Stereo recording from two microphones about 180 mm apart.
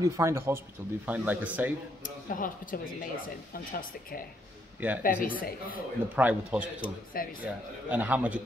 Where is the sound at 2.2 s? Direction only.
50° left (ahead or behind).